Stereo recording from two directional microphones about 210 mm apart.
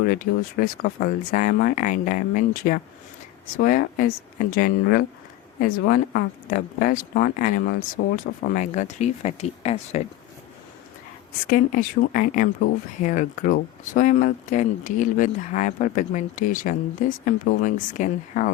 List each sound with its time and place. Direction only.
0.1 s speech: 45° left (ahead or behind)
11.4 s speech: 40° left (ahead or behind)